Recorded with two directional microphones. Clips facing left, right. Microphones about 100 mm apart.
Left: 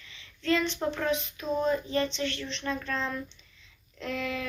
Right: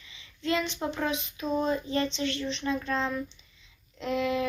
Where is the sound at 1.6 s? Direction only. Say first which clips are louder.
Left 1 dB; 25° right (ahead or behind).